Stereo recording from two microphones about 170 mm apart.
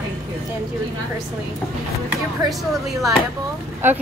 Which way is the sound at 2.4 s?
25° right (ahead or behind).